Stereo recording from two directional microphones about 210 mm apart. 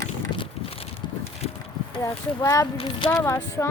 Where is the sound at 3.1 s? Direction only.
10° left (ahead or behind).